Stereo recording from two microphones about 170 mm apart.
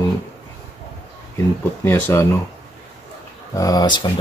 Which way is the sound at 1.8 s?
15° left (ahead or behind).